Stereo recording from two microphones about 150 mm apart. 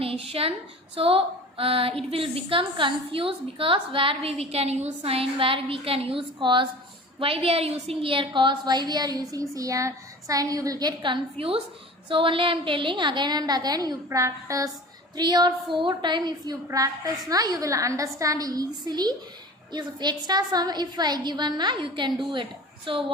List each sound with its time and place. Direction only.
0.0 s a woman's voice: 40° right (ahead or behind)